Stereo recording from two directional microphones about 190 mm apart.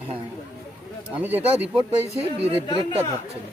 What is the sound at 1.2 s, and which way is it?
Speech, 10° right (ahead or behind).